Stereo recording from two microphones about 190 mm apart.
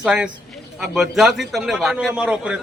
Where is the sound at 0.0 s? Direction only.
5° right (ahead or behind).